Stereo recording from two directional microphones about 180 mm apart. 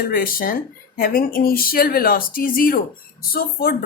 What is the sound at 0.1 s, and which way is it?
Speech, 55° left (ahead or behind).